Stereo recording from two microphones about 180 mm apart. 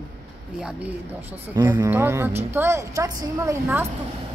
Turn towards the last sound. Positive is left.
turn(degrees=-15)  # may be behind; listen again after turning